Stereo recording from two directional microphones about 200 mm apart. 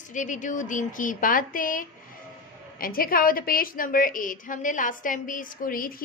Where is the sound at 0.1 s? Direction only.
40° left (ahead or behind).